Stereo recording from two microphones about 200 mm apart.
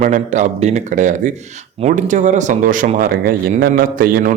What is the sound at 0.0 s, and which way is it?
Speech, 40° right (ahead or behind).